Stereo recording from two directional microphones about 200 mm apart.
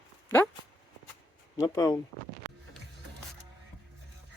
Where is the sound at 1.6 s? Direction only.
20° left (ahead or behind).